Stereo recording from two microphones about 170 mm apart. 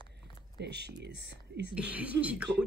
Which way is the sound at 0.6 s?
80° right.